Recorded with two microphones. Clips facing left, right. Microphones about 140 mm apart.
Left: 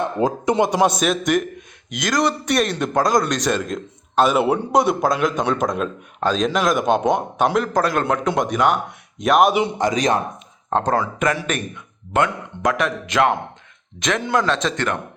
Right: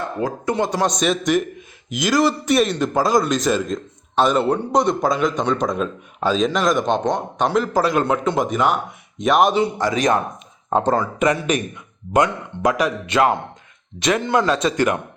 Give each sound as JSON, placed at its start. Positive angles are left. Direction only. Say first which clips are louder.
{"t": 0.0, "sound": "a man's voice", "louder": "left 3 dB", "side_deg": 20}
{"t": 9.6, "sound": "a man's voice", "louder": "even", "side_deg": 20}
{"t": 10.7, "sound": "speech", "louder": "right 2 dB", "side_deg": -5}
{"t": 12.1, "sound": "a man's voice", "louder": "right 2 dB", "side_deg": -10}